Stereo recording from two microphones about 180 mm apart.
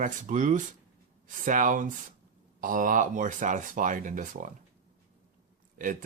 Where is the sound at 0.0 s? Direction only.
45° right (ahead or behind).